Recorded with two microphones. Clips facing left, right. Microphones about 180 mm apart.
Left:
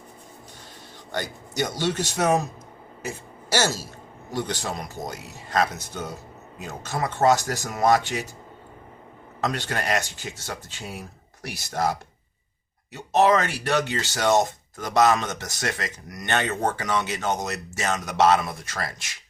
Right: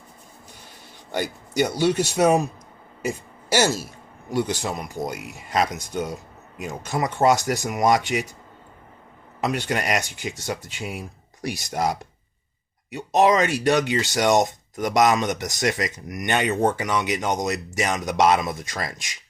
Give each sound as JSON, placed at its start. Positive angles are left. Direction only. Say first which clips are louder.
{"t": 1.1, "sound": "speech", "louder": "right 5 dB", "side_deg": -10}
{"t": 9.4, "sound": "speech", "louder": "right 3 dB", "side_deg": -10}